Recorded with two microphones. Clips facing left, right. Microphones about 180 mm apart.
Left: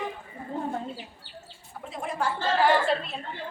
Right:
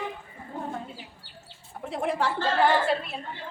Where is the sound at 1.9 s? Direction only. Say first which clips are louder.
Right 3 dB; 65° right (ahead or behind).